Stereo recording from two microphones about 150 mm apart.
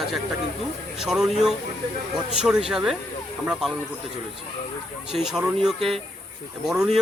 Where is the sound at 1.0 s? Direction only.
Centre (ahead or behind).